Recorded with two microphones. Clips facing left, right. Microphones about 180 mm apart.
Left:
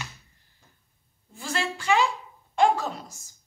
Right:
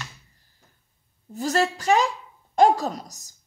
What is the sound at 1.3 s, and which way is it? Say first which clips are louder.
Speech: right 8 dB; 40° right (ahead or behind).